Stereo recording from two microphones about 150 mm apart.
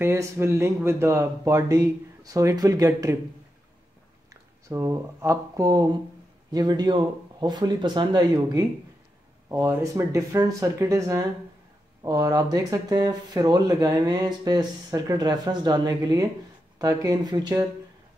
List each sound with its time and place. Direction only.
0.0 s speech: 15° right (ahead or behind)
4.3 s speech: 20° right (ahead or behind)
9.5 s speech: 15° right (ahead or behind)